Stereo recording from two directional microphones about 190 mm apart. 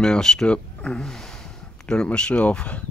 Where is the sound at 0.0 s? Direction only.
5° left (ahead or behind).